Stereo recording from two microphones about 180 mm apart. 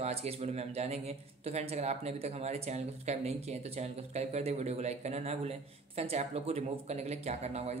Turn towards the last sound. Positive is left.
turn(degrees=-35)  # may be behind; listen again after turning